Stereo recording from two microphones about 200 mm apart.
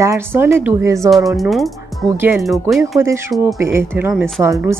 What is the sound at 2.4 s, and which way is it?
Speech, centre (ahead or behind).